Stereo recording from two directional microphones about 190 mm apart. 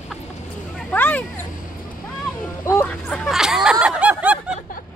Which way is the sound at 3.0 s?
Centre (ahead or behind).